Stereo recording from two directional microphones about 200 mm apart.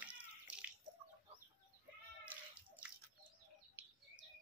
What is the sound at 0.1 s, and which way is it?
Bathtub, 5° right (ahead or behind).